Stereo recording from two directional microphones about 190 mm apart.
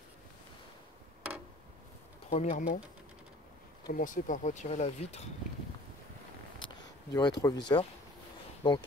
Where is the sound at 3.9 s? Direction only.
45° left (ahead or behind).